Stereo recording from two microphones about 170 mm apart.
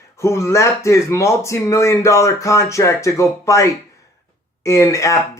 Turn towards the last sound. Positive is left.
turn(degrees=20)  # may be behind; listen again after turning